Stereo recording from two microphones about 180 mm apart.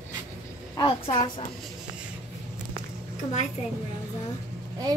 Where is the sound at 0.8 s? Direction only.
25° left (ahead or behind).